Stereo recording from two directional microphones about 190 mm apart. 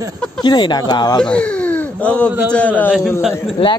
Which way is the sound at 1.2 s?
5° left (ahead or behind).